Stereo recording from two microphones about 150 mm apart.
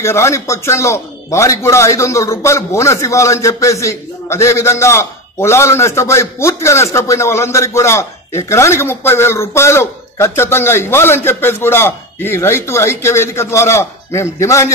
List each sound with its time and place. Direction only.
0.0 s a man's voice: 20° left (ahead or behind)